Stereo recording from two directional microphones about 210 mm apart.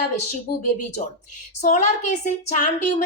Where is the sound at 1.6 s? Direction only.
35° left (ahead or behind).